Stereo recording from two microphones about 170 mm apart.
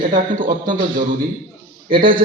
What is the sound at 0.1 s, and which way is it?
A man's voice, 50° right (ahead or behind).